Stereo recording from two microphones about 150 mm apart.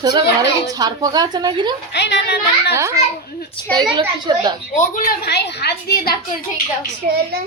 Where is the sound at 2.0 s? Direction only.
90° left.